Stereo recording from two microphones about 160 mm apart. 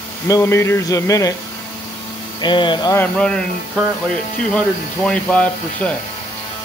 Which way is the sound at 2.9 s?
5° left (ahead or behind).